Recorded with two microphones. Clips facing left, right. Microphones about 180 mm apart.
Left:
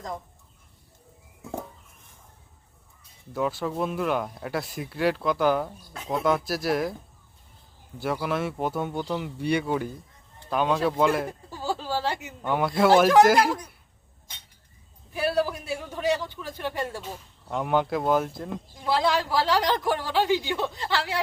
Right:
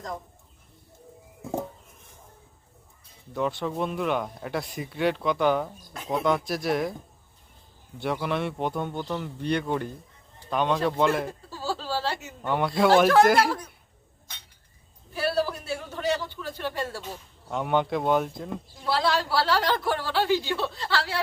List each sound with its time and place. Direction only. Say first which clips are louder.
3.3 s speech: even; 5° left (ahead or behind)
7.9 s speech: even; centre (ahead or behind)
11.3 s a sound: left 1 dB; 15° left (ahead or behind)
12.4 s speech: left 1 dB; 5° left (ahead or behind)
15.1 s a man's voice: left 1 dB; 15° left (ahead or behind)
17.5 s speech: even; centre (ahead or behind)
18.9 s a man's voice: left 1 dB; 15° left (ahead or behind)